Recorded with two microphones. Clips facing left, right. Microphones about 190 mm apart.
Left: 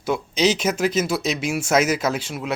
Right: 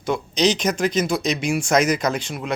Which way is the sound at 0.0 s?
5° left (ahead or behind).